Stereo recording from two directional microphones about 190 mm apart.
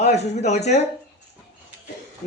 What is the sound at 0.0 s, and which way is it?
Speech, 35° left (ahead or behind).